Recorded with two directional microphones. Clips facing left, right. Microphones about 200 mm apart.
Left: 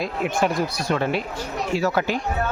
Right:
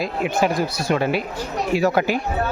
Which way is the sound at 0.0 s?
Centre (ahead or behind).